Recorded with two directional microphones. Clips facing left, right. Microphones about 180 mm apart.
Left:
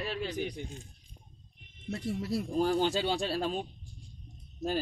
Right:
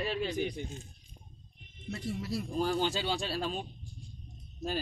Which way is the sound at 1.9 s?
55° left (ahead or behind).